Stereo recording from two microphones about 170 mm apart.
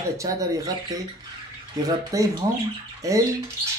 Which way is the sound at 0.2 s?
20° right (ahead or behind).